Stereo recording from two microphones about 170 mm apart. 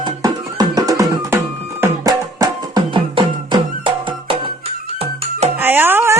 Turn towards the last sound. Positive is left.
turn(degrees=-15)  # may be behind; listen again after turning